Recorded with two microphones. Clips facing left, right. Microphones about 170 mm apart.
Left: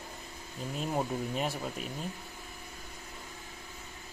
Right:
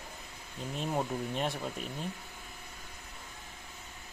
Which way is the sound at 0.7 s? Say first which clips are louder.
Left 1 dB; 5° left (ahead or behind).